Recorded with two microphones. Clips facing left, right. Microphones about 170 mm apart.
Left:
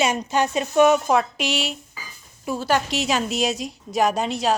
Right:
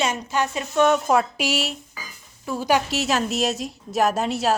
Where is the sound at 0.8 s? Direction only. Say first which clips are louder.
Left 2 dB; 5° left (ahead or behind).